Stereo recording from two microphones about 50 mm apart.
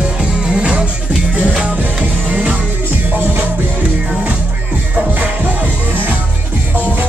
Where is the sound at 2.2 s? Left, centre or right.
Right.